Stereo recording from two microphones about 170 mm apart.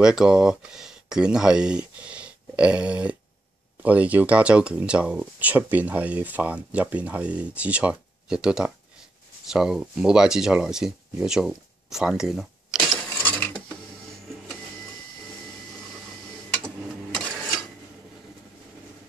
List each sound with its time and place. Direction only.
0.0 s speech: 5° right (ahead or behind)